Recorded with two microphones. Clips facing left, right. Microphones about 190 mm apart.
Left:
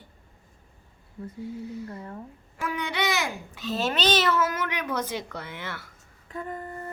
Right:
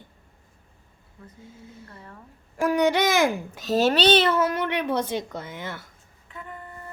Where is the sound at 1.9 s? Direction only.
30° left (ahead or behind).